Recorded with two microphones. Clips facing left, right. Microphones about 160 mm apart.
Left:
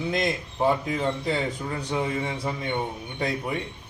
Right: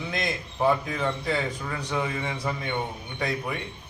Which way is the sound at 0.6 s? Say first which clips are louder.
Left 1 dB; 25° left (ahead or behind).